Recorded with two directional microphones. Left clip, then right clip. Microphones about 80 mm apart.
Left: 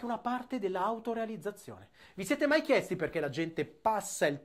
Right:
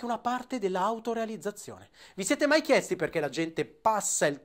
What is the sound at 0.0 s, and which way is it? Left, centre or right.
Speech, right.